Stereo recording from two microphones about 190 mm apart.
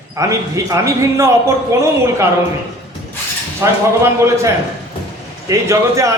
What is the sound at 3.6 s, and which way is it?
Speech, 15° right (ahead or behind).